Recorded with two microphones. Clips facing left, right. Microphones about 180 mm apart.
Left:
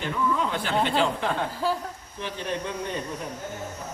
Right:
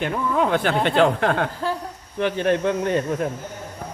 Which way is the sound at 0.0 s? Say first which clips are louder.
Right 5 dB; 60° right (ahead or behind).